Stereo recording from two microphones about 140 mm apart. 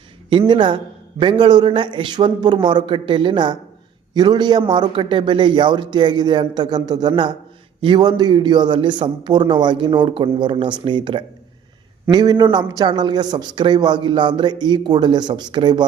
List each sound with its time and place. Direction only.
0.3 s a man's voice: 35° right (ahead or behind)